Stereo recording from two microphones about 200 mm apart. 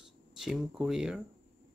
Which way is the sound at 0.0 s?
Centre (ahead or behind).